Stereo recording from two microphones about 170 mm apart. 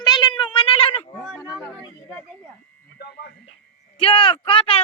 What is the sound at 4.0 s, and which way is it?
Speech, 30° left (ahead or behind).